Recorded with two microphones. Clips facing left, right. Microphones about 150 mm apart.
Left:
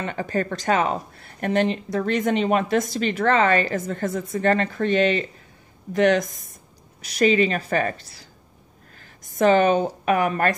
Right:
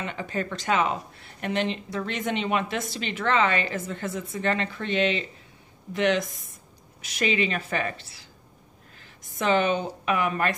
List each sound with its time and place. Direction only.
0.0 s a woman's voice: 45° left (ahead or behind)